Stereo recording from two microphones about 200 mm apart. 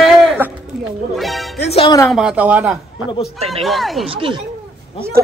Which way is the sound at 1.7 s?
30° left (ahead or behind).